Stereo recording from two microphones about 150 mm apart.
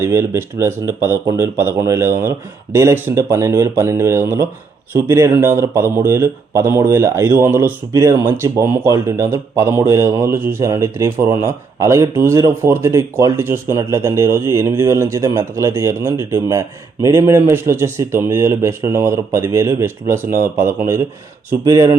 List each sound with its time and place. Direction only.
0.0 s speech: 20° right (ahead or behind)